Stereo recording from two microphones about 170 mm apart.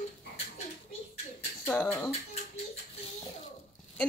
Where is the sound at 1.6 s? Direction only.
10° left (ahead or behind).